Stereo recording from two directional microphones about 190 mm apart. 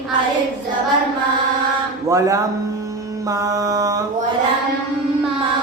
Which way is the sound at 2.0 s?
15° right (ahead or behind).